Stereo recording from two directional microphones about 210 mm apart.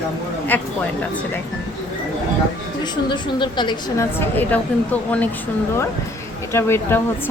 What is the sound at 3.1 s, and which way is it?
Speech, 20° left (ahead or behind).